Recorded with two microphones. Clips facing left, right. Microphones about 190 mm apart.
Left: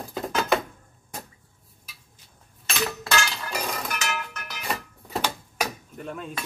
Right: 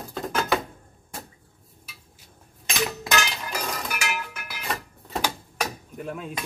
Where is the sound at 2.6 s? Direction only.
15° right (ahead or behind).